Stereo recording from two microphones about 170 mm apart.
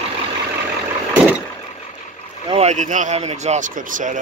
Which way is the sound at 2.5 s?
40° right (ahead or behind).